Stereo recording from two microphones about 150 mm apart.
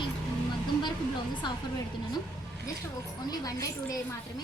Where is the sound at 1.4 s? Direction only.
30° left (ahead or behind).